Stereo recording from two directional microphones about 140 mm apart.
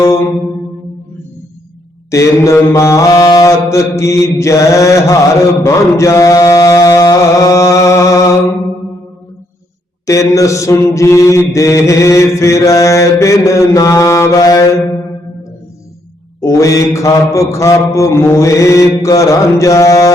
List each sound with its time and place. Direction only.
0.0 s music: 20° left (ahead or behind)
2.0 s mantra: 20° left (ahead or behind)
5.6 s chant: 20° left (ahead or behind)
10.1 s mantra: 25° left (ahead or behind)
16.4 s mantra: 20° left (ahead or behind)